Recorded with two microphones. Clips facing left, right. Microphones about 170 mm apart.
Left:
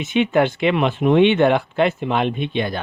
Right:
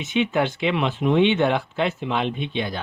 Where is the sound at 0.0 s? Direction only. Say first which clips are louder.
Left 4 dB; 55° left (ahead or behind).